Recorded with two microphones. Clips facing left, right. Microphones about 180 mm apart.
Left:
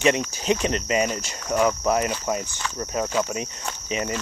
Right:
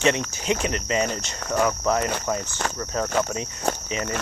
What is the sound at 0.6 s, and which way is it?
Speech, 25° left (ahead or behind).